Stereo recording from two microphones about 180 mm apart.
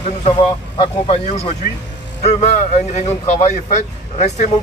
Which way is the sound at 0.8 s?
35° left (ahead or behind).